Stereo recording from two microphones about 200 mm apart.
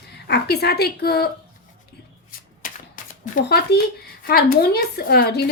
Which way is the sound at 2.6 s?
40° left (ahead or behind).